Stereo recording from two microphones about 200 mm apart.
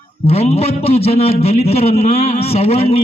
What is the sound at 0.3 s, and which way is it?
A man's voice, 30° left (ahead or behind).